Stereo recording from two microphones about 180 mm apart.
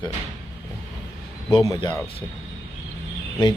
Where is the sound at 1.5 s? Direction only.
25° left (ahead or behind).